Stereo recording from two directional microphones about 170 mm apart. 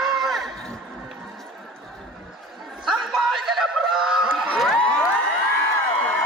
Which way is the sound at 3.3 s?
Centre (ahead or behind).